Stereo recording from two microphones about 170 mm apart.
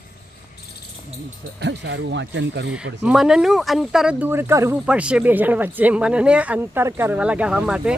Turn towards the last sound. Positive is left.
turn(degrees=-5)  # may be behind; listen again after turning